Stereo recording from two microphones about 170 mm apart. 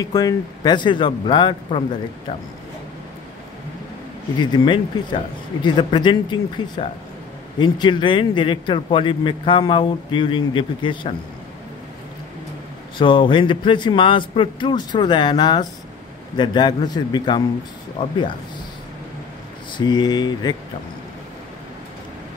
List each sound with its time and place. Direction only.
0.0 s a man's voice: 20° left (ahead or behind)
4.4 s a man's voice: 25° left (ahead or behind)
12.9 s a man's voice: 30° left (ahead or behind)
19.8 s a man's voice: 25° left (ahead or behind)